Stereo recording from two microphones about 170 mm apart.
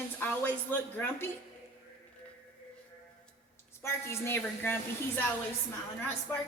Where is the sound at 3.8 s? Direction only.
15° left (ahead or behind).